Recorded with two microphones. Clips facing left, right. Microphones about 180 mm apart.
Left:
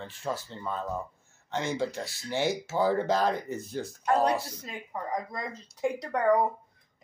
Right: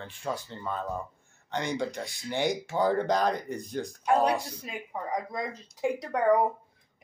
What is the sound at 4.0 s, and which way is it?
Speech, 10° right (ahead or behind).